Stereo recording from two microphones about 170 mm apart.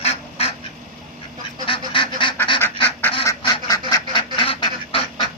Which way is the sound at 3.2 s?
20° left (ahead or behind).